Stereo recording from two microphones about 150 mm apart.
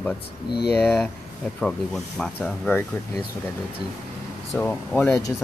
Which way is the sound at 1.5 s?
5° left (ahead or behind).